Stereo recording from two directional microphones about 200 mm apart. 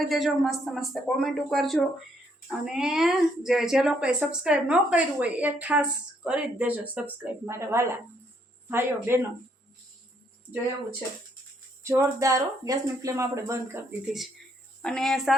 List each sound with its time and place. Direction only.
0.0 s a woman's voice: centre (ahead or behind)
11.8 s speech: 15° right (ahead or behind)
14.0 s a woman's voice: centre (ahead or behind)